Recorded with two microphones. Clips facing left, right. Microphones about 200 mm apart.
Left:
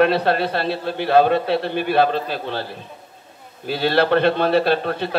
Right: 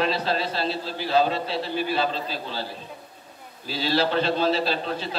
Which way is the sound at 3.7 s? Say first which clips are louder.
Left 6 dB; 60° left (ahead or behind).